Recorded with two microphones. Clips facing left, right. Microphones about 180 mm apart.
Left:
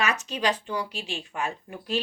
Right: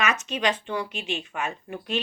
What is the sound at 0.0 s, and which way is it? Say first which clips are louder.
A woman's voice: right 1 dB; 35° left (ahead or behind).